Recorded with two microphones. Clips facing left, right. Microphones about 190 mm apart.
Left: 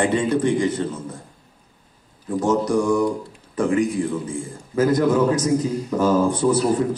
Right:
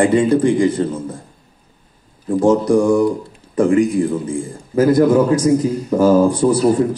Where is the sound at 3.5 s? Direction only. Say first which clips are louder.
Right 6 dB; 40° right (ahead or behind).